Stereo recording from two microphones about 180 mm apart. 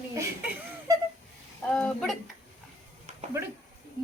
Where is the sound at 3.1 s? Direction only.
40° right (ahead or behind).